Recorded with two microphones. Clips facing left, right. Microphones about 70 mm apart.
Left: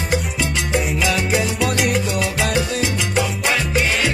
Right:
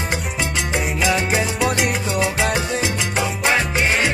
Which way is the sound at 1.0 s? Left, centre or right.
Right.